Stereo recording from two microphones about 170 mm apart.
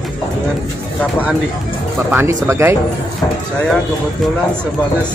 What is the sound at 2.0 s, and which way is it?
Speech, 15° right (ahead or behind).